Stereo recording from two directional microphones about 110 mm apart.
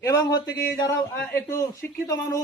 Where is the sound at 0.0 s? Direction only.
35° left (ahead or behind).